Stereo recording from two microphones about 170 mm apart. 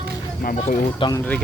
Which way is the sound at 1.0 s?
30° left (ahead or behind).